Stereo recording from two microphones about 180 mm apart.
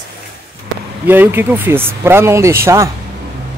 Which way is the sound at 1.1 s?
10° right (ahead or behind).